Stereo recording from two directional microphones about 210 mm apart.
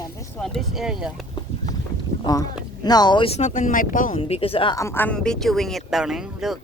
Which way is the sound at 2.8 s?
20° left (ahead or behind).